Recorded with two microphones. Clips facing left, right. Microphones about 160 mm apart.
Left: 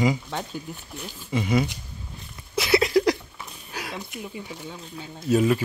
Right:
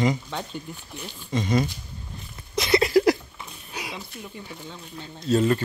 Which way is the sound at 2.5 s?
5° left (ahead or behind).